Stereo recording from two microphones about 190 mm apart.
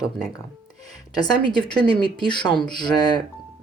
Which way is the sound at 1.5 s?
25° left (ahead or behind).